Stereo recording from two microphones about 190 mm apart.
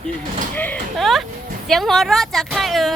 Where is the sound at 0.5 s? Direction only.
10° left (ahead or behind).